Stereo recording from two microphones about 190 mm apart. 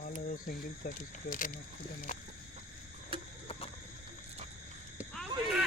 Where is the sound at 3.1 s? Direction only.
30° right (ahead or behind).